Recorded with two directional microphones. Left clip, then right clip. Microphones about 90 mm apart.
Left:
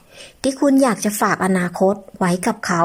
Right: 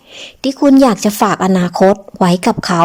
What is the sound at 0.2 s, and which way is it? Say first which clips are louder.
A woman's voice: right 4 dB; 15° right (ahead or behind).